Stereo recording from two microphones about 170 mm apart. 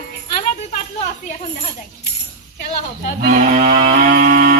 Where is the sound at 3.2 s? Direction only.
50° right (ahead or behind).